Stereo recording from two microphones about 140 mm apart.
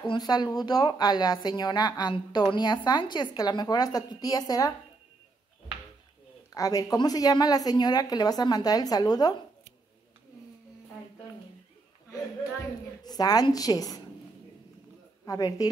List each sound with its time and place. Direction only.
0.0 s speech: 30° left (ahead or behind)
6.5 s a woman's voice: 25° left (ahead or behind)
13.0 s a woman's voice: 30° left (ahead or behind)
15.2 s a woman's voice: 25° left (ahead or behind)